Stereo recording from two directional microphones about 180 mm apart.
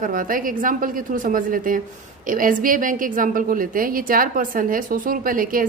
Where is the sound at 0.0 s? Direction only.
50° right (ahead or behind).